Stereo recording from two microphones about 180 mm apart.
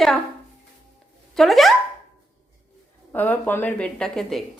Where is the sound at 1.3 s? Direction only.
Centre (ahead or behind).